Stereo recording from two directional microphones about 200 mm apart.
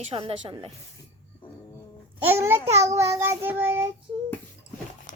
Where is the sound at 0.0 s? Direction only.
30° right (ahead or behind).